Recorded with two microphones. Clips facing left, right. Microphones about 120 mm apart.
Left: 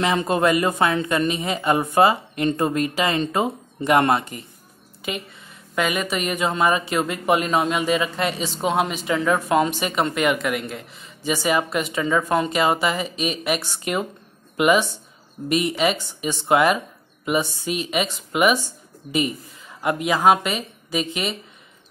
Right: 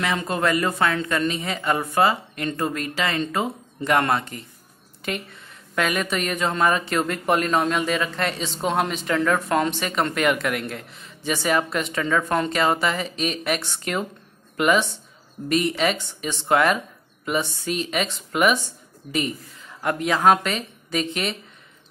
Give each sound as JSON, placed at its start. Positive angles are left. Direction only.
{"t": 0.0, "sound": "a woman's voice", "side_deg": 20}
{"t": 5.8, "sound": "a woman's voice", "side_deg": 5}